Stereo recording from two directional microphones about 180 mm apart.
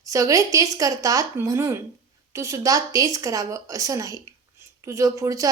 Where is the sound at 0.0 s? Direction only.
20° right (ahead or behind).